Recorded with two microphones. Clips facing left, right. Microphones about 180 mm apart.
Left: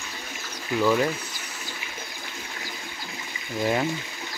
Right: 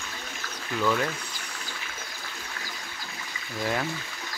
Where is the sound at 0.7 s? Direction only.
10° left (ahead or behind).